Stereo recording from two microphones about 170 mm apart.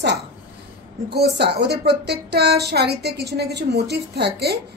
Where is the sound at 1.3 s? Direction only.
75° right (ahead or behind).